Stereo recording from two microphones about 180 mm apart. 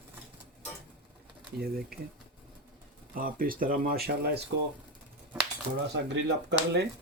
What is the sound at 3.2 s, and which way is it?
Speech, 50° right (ahead or behind).